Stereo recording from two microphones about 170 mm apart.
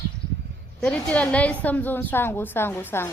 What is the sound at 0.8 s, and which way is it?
A woman's voice, 5° left (ahead or behind).